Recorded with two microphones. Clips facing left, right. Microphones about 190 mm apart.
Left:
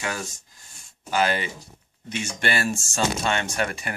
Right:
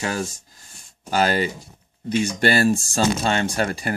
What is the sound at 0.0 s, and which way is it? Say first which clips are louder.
Speech: right 5 dB; 35° right (ahead or behind).